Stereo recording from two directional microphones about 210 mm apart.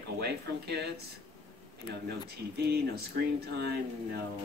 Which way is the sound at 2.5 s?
50° right (ahead or behind).